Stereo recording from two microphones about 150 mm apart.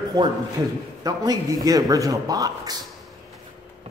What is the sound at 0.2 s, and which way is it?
Speech, 25° right (ahead or behind).